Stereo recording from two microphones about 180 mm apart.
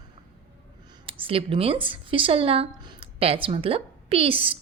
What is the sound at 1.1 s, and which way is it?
Speech, 30° right (ahead or behind).